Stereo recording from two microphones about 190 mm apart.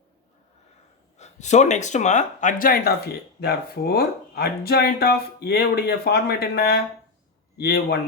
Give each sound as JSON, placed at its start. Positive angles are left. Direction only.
{"t": 1.2, "sound": "speech", "side_deg": 35}